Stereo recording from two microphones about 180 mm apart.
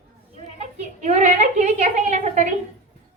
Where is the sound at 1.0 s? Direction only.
40° right (ahead or behind).